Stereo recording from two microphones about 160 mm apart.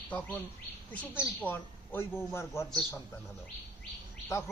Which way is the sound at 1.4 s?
10° left (ahead or behind).